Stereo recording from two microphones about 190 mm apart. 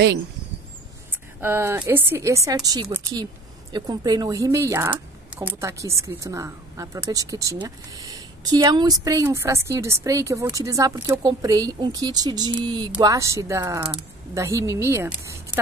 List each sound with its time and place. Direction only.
1.1 s speech: 10° right (ahead or behind)